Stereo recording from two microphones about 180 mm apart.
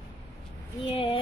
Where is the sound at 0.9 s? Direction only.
30° left (ahead or behind).